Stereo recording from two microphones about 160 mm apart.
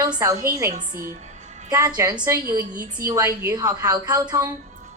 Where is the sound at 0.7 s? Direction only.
55° right (ahead or behind).